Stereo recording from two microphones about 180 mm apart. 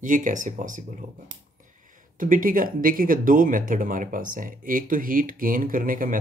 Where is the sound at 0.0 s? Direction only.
45° right (ahead or behind).